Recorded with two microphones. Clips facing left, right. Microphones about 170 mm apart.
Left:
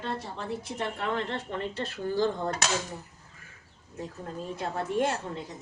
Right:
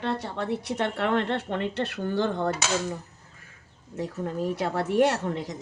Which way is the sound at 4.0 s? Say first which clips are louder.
Right 8 dB; 85° right.